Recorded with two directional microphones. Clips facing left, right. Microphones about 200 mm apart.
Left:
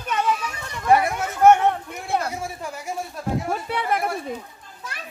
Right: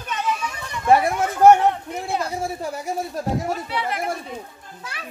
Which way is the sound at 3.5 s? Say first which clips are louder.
Left 1 dB; 50° left (ahead or behind).